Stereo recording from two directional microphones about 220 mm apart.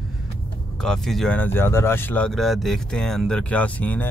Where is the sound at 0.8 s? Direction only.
Centre (ahead or behind).